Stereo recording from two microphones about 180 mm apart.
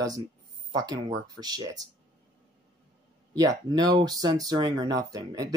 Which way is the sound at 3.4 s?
20° right (ahead or behind).